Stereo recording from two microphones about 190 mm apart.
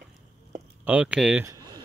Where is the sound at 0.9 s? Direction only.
5° right (ahead or behind).